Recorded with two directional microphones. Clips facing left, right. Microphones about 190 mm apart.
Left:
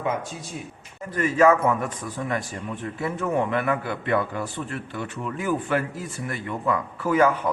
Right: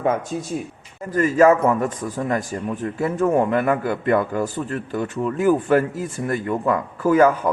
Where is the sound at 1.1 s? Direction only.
40° right (ahead or behind).